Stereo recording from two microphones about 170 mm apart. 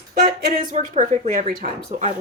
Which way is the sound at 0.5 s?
45° right (ahead or behind).